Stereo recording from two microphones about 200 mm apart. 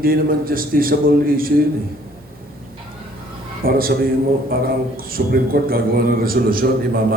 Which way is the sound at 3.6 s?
45° right (ahead or behind).